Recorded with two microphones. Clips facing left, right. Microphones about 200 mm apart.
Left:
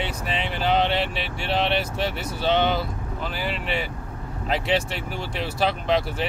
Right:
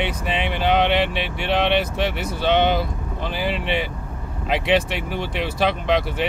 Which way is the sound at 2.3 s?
55° right (ahead or behind).